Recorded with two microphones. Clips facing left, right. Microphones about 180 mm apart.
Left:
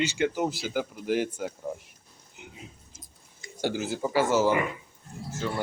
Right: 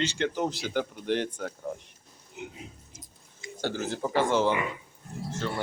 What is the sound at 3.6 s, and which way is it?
Speech, 10° left (ahead or behind).